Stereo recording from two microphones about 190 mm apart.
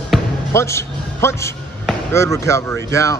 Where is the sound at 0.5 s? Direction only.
15° left (ahead or behind).